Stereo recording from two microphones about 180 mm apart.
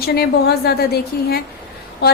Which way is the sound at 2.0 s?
60° left (ahead or behind).